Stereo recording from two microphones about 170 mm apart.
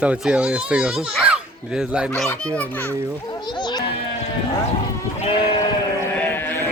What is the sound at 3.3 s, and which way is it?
Children playing, 25° left (ahead or behind).